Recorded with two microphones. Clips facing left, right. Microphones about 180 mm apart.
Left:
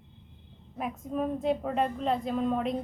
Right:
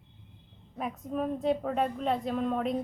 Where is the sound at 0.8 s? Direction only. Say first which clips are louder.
Left 1 dB; centre (ahead or behind).